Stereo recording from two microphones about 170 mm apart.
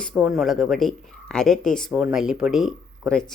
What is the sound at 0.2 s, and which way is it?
Speech, 5° right (ahead or behind).